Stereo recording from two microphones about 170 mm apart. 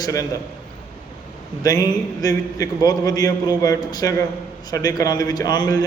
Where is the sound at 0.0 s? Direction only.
20° left (ahead or behind).